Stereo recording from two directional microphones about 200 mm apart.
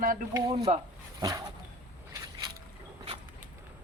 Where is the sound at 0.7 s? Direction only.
30° right (ahead or behind).